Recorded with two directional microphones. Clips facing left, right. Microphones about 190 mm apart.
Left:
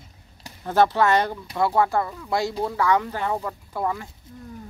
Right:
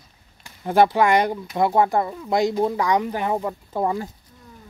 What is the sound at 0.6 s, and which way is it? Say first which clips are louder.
Speech: right 2 dB; 15° right (ahead or behind).